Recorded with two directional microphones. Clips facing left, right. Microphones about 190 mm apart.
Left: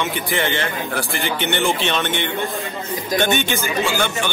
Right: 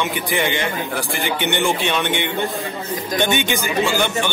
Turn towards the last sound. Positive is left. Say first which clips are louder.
# right 2 dB
turn(degrees=-15)  # may be behind; listen again after turning